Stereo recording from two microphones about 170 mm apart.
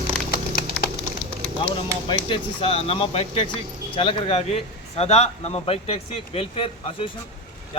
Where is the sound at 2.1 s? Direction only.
30° left (ahead or behind).